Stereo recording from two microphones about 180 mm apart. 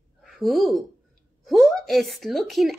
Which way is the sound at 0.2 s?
Centre (ahead or behind).